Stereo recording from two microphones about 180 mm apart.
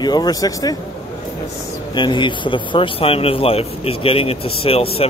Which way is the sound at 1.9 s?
25° left (ahead or behind).